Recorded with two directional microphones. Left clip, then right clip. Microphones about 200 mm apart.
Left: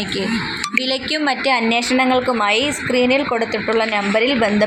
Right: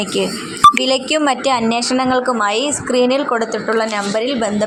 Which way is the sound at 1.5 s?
15° right (ahead or behind).